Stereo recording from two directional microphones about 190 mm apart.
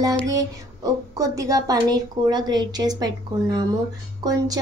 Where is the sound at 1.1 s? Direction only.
15° right (ahead or behind).